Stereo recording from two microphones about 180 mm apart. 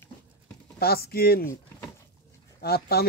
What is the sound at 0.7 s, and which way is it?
Speech, 60° left (ahead or behind).